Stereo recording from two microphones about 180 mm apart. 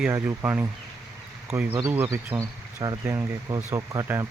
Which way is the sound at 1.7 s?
15° right (ahead or behind).